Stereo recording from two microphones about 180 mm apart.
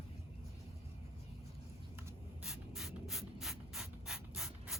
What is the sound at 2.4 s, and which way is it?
Mechanisms, centre (ahead or behind).